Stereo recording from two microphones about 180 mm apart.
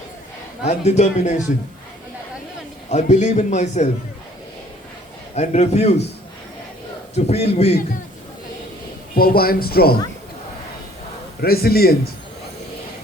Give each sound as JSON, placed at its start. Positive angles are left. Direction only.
{"t": 0.6, "sound": "speech", "side_deg": 40}
{"t": 2.9, "sound": "speech", "side_deg": 40}
{"t": 5.3, "sound": "speech", "side_deg": 35}
{"t": 7.3, "sound": "speech", "side_deg": 35}
{"t": 9.1, "sound": "speech", "side_deg": 55}
{"t": 11.3, "sound": "speech", "side_deg": 60}